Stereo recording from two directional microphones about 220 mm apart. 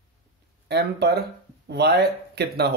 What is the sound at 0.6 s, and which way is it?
Speech, 50° right (ahead or behind).